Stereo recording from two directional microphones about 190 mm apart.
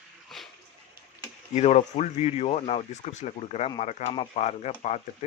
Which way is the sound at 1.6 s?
35° left (ahead or behind).